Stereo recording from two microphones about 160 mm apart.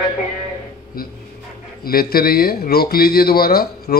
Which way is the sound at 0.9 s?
65° left (ahead or behind).